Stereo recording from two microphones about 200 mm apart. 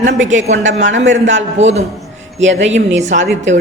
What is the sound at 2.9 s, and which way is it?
Speech, 35° right (ahead or behind).